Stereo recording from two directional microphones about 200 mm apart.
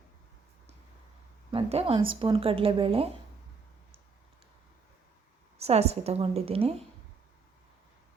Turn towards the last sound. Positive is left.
turn(degrees=-30)  # may be behind; listen again after turning